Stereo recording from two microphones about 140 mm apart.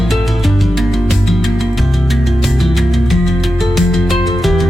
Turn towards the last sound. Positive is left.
turn(degrees=0)  # may be behind; listen again after turning